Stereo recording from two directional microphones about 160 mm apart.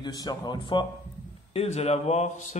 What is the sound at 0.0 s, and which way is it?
Speech, 25° left (ahead or behind).